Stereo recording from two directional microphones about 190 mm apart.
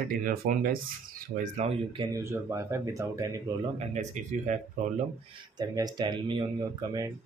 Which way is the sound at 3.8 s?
35° right (ahead or behind).